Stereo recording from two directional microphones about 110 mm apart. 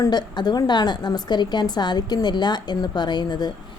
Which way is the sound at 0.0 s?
40° left (ahead or behind).